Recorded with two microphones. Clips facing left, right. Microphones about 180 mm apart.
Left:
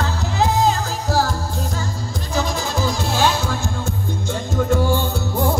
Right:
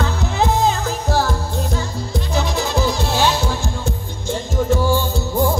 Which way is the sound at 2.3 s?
45° left (ahead or behind).